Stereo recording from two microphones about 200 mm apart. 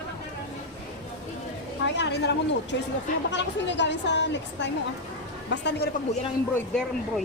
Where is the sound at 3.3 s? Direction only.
60° left (ahead or behind).